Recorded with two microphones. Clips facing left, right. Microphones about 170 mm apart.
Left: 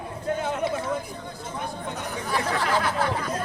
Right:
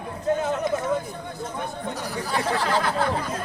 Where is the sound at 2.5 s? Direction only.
30° right (ahead or behind).